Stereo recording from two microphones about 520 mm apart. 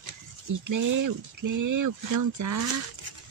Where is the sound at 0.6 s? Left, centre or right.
Right.